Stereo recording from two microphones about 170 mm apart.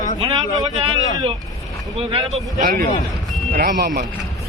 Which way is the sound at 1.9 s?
35° right (ahead or behind).